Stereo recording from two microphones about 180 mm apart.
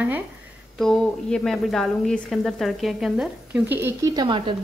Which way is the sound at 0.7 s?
5° left (ahead or behind).